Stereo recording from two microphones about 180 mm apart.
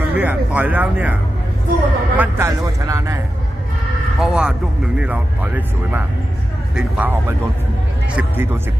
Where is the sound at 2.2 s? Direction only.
15° right (ahead or behind).